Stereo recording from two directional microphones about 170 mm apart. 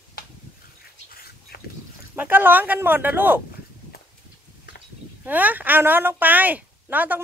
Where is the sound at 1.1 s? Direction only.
65° left (ahead or behind).